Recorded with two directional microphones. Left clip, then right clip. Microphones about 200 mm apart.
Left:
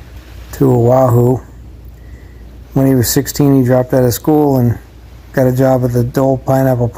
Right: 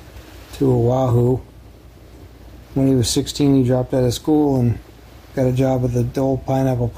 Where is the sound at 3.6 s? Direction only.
20° left (ahead or behind).